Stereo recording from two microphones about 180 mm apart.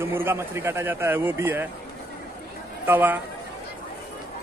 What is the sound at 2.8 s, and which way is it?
Speech, 10° right (ahead or behind).